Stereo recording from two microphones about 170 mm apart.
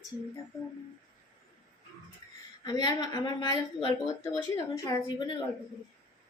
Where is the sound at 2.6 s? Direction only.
25° left (ahead or behind).